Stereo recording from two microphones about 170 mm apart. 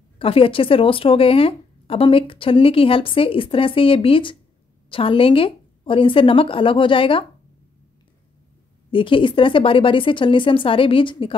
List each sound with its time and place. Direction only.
0.2 s speech: 35° left (ahead or behind)
8.9 s speech: 30° left (ahead or behind)